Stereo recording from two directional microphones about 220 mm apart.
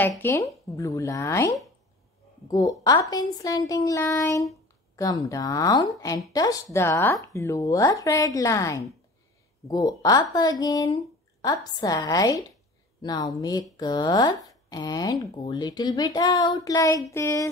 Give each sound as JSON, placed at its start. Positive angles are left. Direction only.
{"t": 0.1, "sound": "speech", "side_deg": 10}